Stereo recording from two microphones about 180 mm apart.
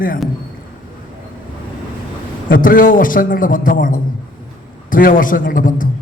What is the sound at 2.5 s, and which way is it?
A man's voice, 50° left (ahead or behind).